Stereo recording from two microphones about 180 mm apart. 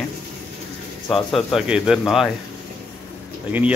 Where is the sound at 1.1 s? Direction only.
Centre (ahead or behind).